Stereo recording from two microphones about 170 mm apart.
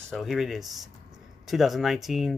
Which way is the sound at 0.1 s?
Centre (ahead or behind).